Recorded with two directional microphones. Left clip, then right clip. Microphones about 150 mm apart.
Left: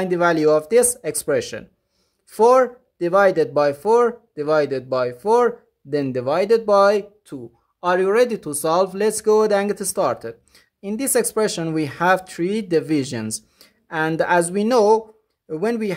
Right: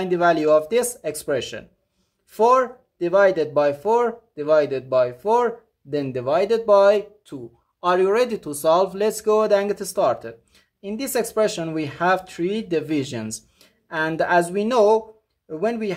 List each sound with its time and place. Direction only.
0.0 s speech: 30° left (ahead or behind)